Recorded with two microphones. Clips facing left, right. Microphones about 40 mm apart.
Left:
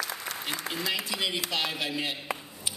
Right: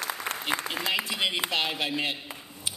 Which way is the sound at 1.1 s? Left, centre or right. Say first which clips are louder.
Right 2 dB; right.